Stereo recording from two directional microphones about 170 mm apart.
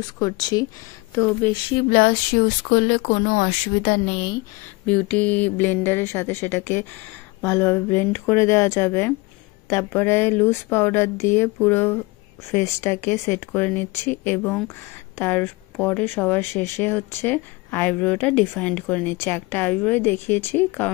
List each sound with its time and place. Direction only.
0.2 s speech: 20° left (ahead or behind)
1.9 s speech: 60° left (ahead or behind)
4.0 s speech: 40° left (ahead or behind)
4.8 s speech: 10° left (ahead or behind)